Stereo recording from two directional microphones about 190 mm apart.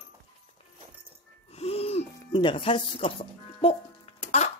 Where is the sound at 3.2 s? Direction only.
30° left (ahead or behind).